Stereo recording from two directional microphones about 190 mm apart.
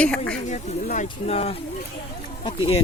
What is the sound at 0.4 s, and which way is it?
Speech, 40° left (ahead or behind).